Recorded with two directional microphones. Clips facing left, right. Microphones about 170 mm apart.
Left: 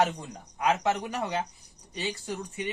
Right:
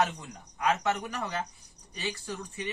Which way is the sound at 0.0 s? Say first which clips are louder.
Left 3 dB; 25° left (ahead or behind).